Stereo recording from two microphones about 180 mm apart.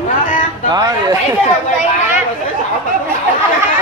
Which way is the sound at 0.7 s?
20° right (ahead or behind).